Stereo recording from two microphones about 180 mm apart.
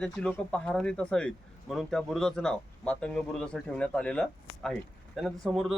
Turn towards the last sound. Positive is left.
turn(degrees=0)  # may be behind; listen again after turning